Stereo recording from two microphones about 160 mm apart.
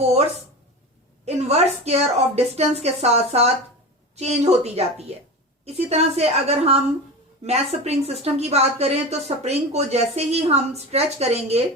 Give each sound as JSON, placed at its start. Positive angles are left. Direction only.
{"t": 1.2, "sound": "speech", "side_deg": -40}